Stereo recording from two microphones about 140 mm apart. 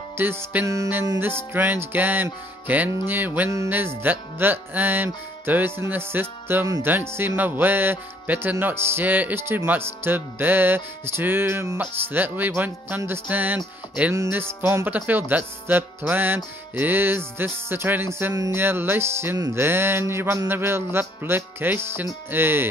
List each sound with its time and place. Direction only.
0.2 s speech: 15° right (ahead or behind)
0.7 s music: 20° right (ahead or behind)
1.5 s speech: 15° right (ahead or behind)